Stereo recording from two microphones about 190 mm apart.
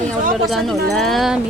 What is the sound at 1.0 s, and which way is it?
Speech, centre (ahead or behind).